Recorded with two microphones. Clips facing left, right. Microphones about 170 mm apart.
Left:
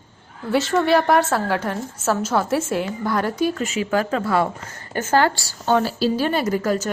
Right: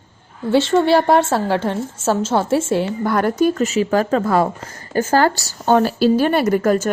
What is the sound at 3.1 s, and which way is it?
Speech, 50° right (ahead or behind).